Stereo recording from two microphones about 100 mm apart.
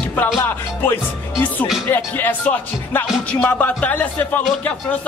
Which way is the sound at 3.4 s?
15° left (ahead or behind).